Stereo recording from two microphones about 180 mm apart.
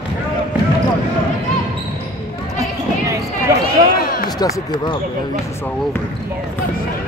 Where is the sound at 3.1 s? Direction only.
15° right (ahead or behind).